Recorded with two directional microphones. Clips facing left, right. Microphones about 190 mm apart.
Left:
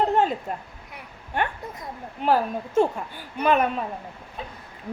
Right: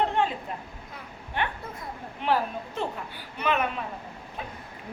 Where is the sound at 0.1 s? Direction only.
40° left (ahead or behind).